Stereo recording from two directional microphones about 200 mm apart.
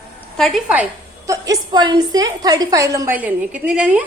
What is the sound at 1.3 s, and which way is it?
A woman's voice, 15° right (ahead or behind).